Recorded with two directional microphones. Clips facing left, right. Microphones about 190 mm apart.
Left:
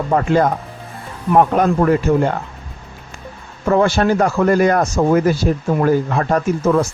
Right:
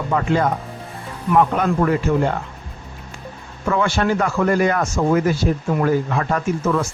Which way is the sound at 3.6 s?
40° left (ahead or behind).